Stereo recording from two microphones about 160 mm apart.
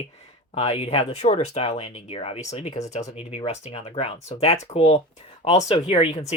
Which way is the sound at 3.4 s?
40° left (ahead or behind).